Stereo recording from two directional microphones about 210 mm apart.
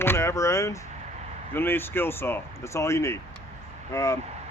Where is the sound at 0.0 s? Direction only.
10° left (ahead or behind).